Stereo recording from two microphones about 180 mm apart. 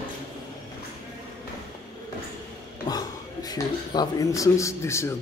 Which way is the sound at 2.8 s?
20° left (ahead or behind).